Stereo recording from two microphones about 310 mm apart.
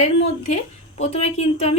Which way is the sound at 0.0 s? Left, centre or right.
Left.